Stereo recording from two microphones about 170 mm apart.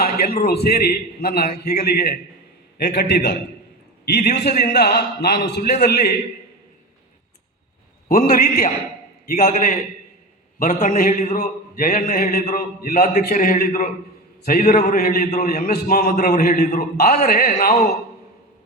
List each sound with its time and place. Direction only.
0.0 s a man's voice: 65° left (ahead or behind)
8.1 s a man's voice: 55° left (ahead or behind)